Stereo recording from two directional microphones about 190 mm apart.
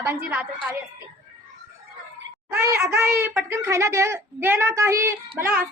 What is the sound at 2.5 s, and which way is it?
Speech, 15° right (ahead or behind).